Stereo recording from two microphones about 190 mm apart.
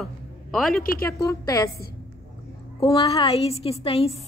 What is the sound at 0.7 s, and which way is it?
Speech, 50° left (ahead or behind).